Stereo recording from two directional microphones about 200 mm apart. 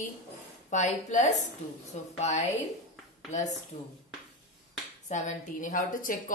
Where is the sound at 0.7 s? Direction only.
35° left (ahead or behind).